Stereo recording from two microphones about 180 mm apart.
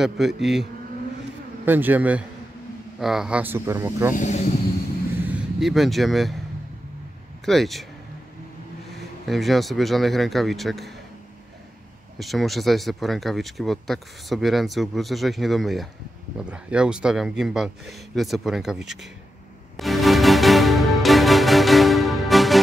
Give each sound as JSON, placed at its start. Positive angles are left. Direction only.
{"t": 0.0, "sound": "speech", "side_deg": 0}
{"t": 1.7, "sound": "speech", "side_deg": -10}
{"t": 4.1, "sound": "speech", "side_deg": 40}
{"t": 5.2, "sound": "speech", "side_deg": -5}
{"t": 7.4, "sound": "speech", "side_deg": 0}
{"t": 9.3, "sound": "speech", "side_deg": 0}
{"t": 12.2, "sound": "speech", "side_deg": 0}
{"t": 19.8, "sound": "music", "side_deg": 0}